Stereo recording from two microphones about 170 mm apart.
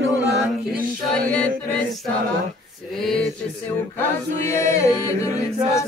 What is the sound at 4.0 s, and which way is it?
Chant, 15° left (ahead or behind).